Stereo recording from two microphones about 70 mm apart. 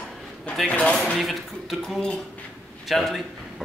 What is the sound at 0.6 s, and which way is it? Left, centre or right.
Speech, centre.